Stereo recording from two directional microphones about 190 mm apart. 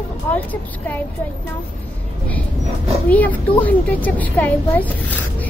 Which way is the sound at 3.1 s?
10° left (ahead or behind).